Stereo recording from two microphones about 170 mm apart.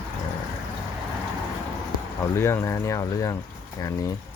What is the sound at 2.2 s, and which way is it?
Speech, 15° left (ahead or behind).